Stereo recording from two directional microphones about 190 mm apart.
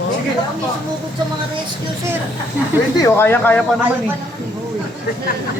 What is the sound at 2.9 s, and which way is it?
Speech, 15° left (ahead or behind).